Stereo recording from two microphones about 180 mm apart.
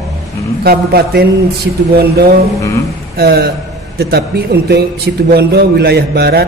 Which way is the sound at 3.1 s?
60° right (ahead or behind).